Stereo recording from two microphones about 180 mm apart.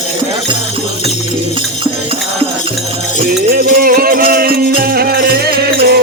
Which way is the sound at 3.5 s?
55° right (ahead or behind).